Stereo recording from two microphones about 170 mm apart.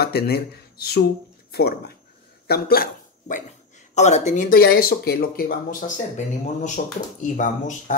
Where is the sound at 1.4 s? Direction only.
70° left (ahead or behind).